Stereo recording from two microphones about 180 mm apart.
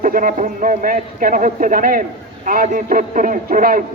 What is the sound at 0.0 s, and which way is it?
Speech, 50° right (ahead or behind).